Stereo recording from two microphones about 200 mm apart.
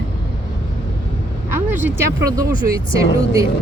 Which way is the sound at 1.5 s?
10° right (ahead or behind).